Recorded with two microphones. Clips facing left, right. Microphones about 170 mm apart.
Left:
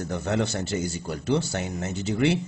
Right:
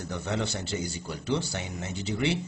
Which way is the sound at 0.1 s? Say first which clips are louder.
Left 5 dB; 45° left (ahead or behind).